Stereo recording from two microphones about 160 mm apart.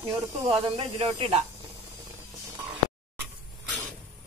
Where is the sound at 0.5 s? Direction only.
35° right (ahead or behind).